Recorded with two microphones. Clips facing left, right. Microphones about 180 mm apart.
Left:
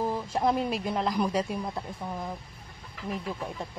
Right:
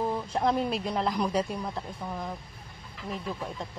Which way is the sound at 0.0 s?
5° left (ahead or behind).